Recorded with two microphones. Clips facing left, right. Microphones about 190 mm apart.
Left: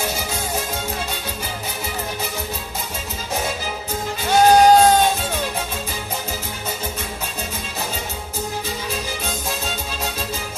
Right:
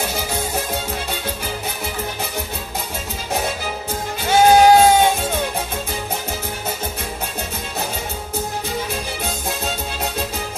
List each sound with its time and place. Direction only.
4.3 s music: 5° right (ahead or behind)